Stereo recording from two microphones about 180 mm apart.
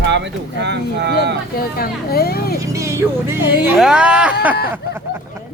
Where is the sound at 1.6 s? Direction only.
55° left (ahead or behind).